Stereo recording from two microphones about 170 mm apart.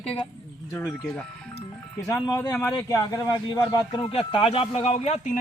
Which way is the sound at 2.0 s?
20° left (ahead or behind).